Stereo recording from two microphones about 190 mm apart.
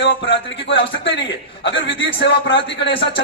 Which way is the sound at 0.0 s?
70° left (ahead or behind).